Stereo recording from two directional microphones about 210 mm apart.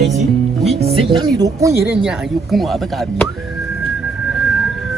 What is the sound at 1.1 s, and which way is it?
Speech, 15° right (ahead or behind).